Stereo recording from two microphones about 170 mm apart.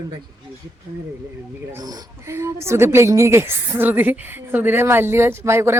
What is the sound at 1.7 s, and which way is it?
A woman's voice, 20° right (ahead or behind).